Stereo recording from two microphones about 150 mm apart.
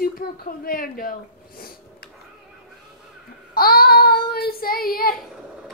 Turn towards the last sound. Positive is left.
turn(degrees=80)